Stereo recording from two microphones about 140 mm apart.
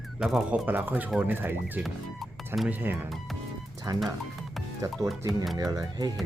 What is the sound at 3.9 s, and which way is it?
Speech, 25° right (ahead or behind).